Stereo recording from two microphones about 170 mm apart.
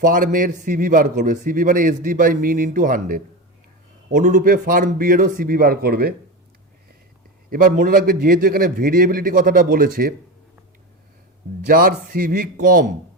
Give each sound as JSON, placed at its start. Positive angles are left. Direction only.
{"t": 0.0, "sound": "a man's voice", "side_deg": -50}
{"t": 7.5, "sound": "a man's voice", "side_deg": -55}
{"t": 11.6, "sound": "a man's voice", "side_deg": -60}